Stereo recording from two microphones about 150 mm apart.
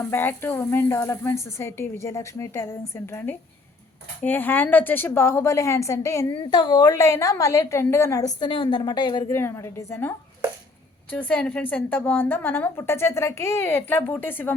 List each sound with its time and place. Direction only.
0.0 s a woman's voice: 15° left (ahead or behind)
8.4 s a woman's voice: 30° left (ahead or behind)
9.3 s a woman's voice: 20° left (ahead or behind)
11.1 s a woman's voice: 10° left (ahead or behind)